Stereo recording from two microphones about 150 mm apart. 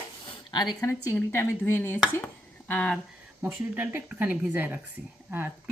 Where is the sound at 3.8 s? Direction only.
10° right (ahead or behind).